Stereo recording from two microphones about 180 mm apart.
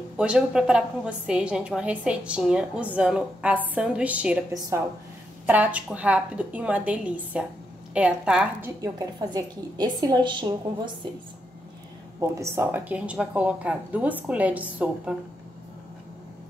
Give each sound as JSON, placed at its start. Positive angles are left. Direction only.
{"t": 0.2, "sound": "a woman's voice", "side_deg": -5}
{"t": 5.5, "sound": "a woman's voice", "side_deg": -10}
{"t": 12.2, "sound": "a woman's voice", "side_deg": -15}